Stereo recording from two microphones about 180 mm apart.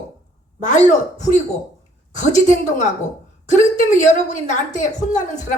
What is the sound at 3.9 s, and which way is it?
Speech, 45° left (ahead or behind).